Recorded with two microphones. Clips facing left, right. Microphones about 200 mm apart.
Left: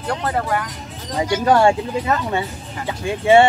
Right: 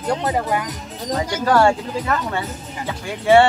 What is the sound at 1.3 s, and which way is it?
Speech, 20° left (ahead or behind).